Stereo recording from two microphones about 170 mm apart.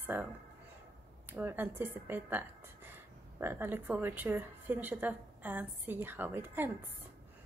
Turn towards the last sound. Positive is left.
turn(degrees=-10)  # may be behind; listen again after turning